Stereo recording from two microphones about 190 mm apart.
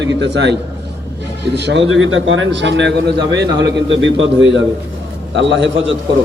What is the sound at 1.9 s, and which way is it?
A man's voice, 90° right.